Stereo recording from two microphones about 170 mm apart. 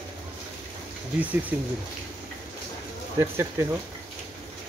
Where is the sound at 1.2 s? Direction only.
10° right (ahead or behind).